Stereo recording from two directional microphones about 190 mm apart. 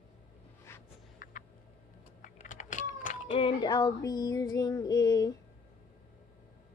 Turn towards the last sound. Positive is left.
turn(degrees=20)  # may be behind; listen again after turning